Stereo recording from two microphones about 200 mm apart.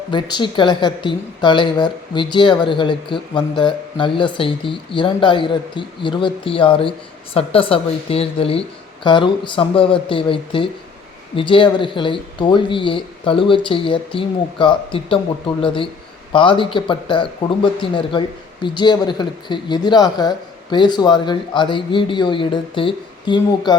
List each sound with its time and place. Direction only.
0.1 s a woman's voice: 25° left (ahead or behind)